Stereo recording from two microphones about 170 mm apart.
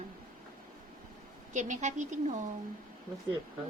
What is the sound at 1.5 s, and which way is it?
Speech, 45° right (ahead or behind).